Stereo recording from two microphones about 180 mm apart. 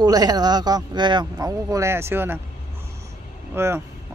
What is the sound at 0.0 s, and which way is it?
Speech, 20° right (ahead or behind).